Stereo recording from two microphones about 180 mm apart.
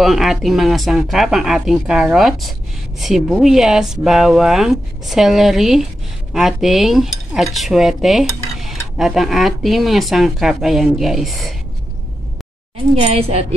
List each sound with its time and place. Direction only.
0.0 s cutlery: centre (ahead or behind)
12.9 s a woman's voice: 35° right (ahead or behind)